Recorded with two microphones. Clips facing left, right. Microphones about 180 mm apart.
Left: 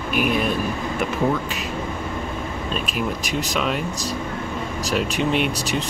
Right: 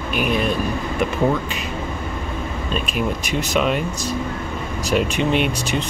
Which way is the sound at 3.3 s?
Centre (ahead or behind).